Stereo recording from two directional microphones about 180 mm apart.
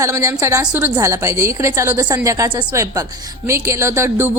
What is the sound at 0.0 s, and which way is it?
A woman's voice, 15° right (ahead or behind).